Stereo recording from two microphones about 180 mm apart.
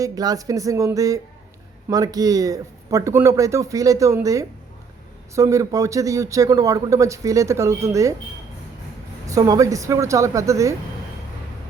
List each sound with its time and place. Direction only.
0.0 s a man's voice: 20° right (ahead or behind)
9.2 s a man's voice: 20° right (ahead or behind)